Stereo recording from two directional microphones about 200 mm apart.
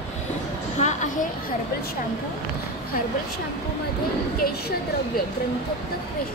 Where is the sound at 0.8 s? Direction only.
35° left (ahead or behind).